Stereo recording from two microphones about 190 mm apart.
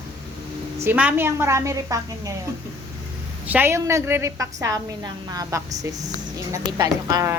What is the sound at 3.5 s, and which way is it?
Speech, 10° right (ahead or behind).